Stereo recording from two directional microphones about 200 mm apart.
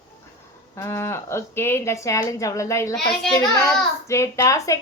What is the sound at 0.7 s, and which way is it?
A woman's voice, 10° left (ahead or behind).